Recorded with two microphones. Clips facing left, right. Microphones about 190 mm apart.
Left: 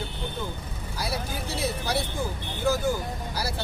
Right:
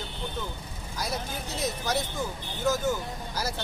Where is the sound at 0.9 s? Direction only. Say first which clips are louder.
Left 1 dB; 10° left (ahead or behind).